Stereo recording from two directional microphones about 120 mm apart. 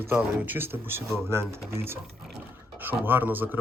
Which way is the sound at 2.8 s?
15° right (ahead or behind).